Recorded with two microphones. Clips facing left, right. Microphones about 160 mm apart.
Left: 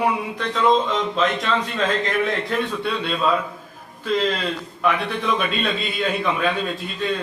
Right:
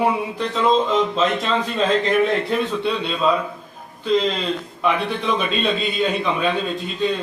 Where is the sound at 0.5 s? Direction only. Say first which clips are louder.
Right 1 dB; 5° right (ahead or behind).